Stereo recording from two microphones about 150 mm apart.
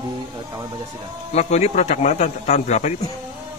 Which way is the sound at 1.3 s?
45° left (ahead or behind).